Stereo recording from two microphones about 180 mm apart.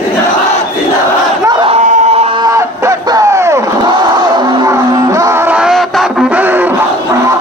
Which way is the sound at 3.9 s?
20° right (ahead or behind).